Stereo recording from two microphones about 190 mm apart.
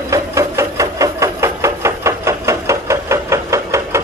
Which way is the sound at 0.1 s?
15° right (ahead or behind).